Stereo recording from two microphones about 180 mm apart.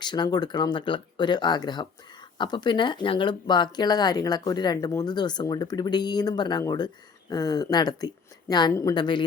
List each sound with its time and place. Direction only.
0.0 s speech: 25° left (ahead or behind)